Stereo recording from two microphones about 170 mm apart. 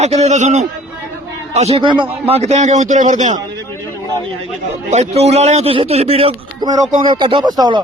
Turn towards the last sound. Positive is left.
turn(degrees=-25)  # may be behind; listen again after turning